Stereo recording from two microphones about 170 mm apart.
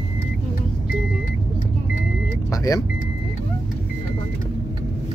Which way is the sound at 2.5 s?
20° left (ahead or behind).